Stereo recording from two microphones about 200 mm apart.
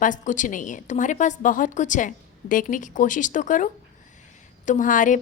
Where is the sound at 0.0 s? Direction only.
40° left (ahead or behind).